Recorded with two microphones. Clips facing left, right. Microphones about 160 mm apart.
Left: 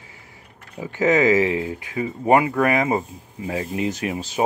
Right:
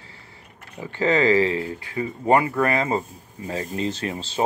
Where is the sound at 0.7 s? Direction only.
15° left (ahead or behind).